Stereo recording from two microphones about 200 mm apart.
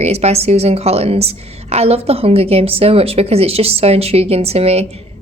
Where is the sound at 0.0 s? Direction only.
30° right (ahead or behind).